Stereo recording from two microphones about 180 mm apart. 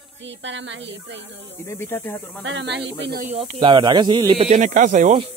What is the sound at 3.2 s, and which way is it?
Speech, 40° right (ahead or behind).